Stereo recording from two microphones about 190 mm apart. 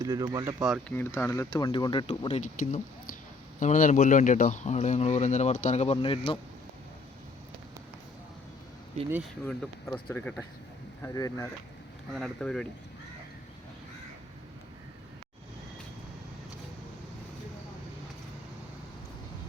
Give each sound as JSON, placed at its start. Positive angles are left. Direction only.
{"t": 0.0, "sound": "speech", "side_deg": -20}
{"t": 0.6, "sound": "speech", "side_deg": 0}
{"t": 0.9, "sound": "speech", "side_deg": 15}
{"t": 9.8, "sound": "speech", "side_deg": 10}
{"t": 12.1, "sound": "speech", "side_deg": 0}